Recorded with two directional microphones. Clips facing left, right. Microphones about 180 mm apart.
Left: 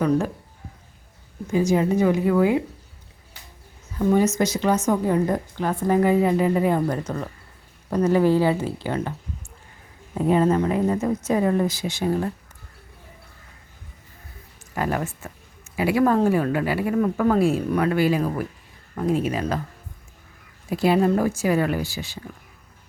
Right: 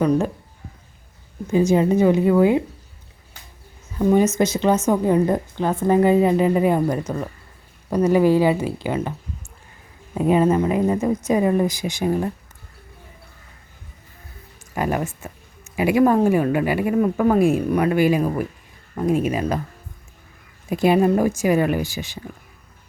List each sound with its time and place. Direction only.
0.0 s a woman's voice: 20° right (ahead or behind)
1.5 s a woman's voice: 25° right (ahead or behind)
3.9 s a woman's voice: 20° right (ahead or behind)
10.2 s speech: 15° right (ahead or behind)
14.8 s speech: 15° right (ahead or behind)
20.7 s speech: 20° right (ahead or behind)